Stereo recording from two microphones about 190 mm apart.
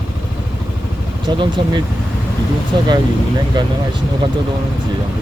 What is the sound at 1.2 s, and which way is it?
Speech, 25° right (ahead or behind).